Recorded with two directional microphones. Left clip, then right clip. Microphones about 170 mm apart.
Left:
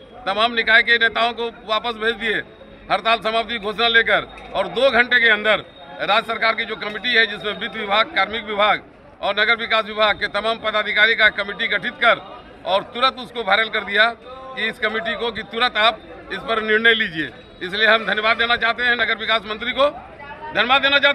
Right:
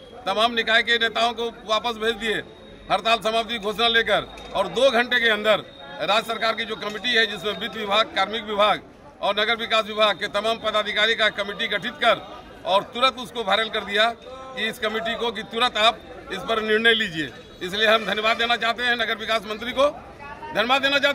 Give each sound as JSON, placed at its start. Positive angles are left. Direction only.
{"t": 0.2, "sound": "a man's voice", "side_deg": -15}